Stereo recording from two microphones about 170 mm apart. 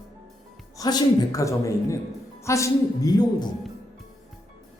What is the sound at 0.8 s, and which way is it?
A man's voice, 20° left (ahead or behind).